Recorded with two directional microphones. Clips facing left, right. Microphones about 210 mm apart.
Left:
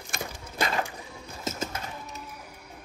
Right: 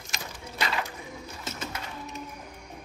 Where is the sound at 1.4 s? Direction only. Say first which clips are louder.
Left 6 dB; 45° left (ahead or behind).